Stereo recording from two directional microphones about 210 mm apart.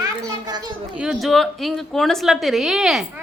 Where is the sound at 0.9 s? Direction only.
Centre (ahead or behind).